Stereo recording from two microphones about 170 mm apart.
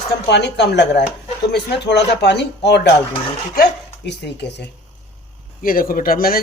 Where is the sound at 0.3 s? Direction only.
85° left.